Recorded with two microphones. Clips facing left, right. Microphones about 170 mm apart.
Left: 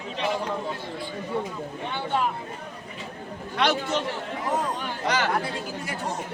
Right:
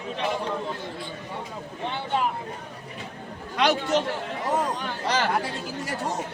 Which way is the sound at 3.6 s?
40° right (ahead or behind).